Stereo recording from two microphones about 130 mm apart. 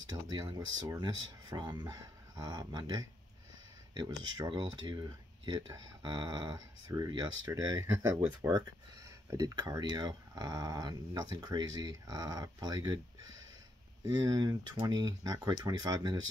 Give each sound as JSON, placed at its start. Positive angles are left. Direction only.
{"t": 0.3, "sound": "speech", "side_deg": -30}
{"t": 14.0, "sound": "speech", "side_deg": -30}